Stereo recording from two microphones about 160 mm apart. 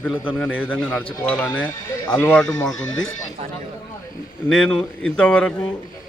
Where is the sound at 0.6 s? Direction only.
10° left (ahead or behind).